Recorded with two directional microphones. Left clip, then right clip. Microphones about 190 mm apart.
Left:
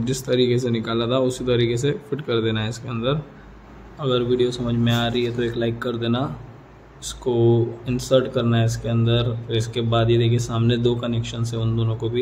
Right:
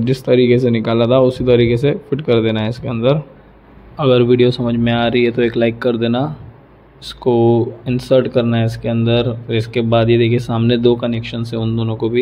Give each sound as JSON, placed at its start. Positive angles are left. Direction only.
{"t": 0.0, "sound": "speech", "side_deg": -25}